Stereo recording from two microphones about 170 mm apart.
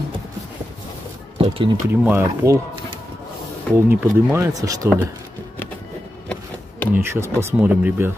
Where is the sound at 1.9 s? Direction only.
10° right (ahead or behind).